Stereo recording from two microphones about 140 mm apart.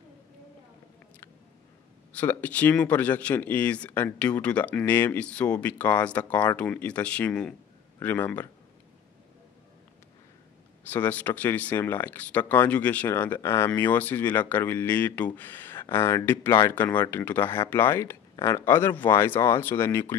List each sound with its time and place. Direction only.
2.1 s speech: 10° left (ahead or behind)
10.9 s speech: 10° left (ahead or behind)